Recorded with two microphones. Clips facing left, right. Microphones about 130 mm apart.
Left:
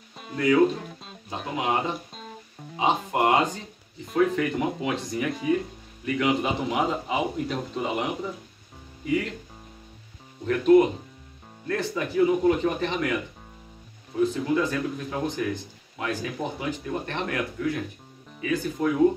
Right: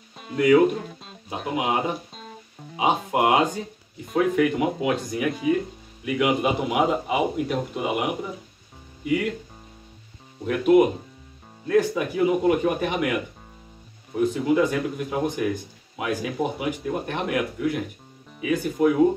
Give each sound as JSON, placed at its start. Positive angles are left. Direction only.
{"t": 0.4, "sound": "speech", "side_deg": -15}
{"t": 0.7, "sound": "music", "side_deg": 0}
{"t": 1.3, "sound": "speech", "side_deg": -10}
{"t": 2.1, "sound": "music", "side_deg": 0}
{"t": 2.8, "sound": "speech", "side_deg": -10}
{"t": 10.4, "sound": "speech", "side_deg": -10}
{"t": 14.2, "sound": "speech", "side_deg": -15}